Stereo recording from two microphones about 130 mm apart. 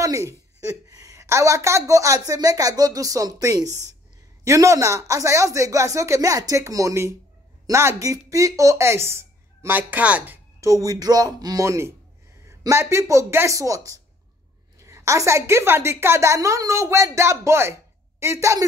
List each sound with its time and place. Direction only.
0.0 s a woman's voice: 25° right (ahead or behind)
10.6 s a woman's voice: 25° right (ahead or behind)